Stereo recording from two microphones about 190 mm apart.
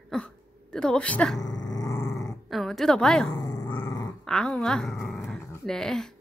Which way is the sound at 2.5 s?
Centre (ahead or behind).